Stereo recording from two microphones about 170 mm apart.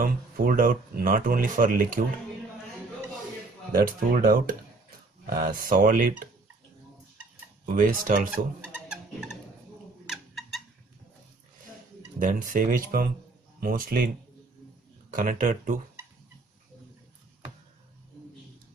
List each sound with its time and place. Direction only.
0.0 s speech: 55° right (ahead or behind)
4.1 s speech: 60° right (ahead or behind)
7.6 s speech: 50° right (ahead or behind)
8.7 s a sound: 5° right (ahead or behind)
12.2 s speech: 50° right (ahead or behind)
15.1 s speech: 50° right (ahead or behind)